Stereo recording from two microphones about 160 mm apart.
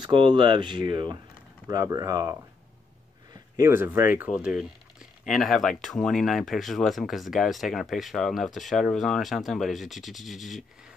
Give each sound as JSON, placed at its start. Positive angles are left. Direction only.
{"t": 0.0, "sound": "speech", "side_deg": -30}
{"t": 3.5, "sound": "speech", "side_deg": -15}